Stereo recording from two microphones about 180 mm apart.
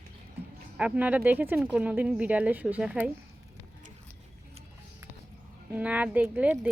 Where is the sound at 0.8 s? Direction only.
10° right (ahead or behind).